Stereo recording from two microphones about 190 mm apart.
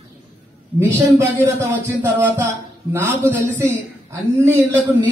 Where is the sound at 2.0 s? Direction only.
10° right (ahead or behind).